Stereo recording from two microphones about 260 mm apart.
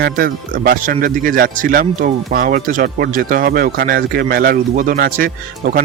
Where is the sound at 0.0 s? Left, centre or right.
Right.